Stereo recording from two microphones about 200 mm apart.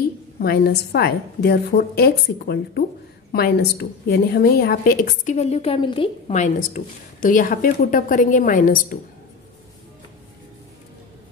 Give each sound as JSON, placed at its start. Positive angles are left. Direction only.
{"t": 0.4, "sound": "a woman's voice", "side_deg": 50}